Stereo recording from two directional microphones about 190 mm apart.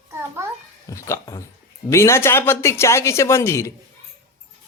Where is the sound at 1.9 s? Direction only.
15° left (ahead or behind).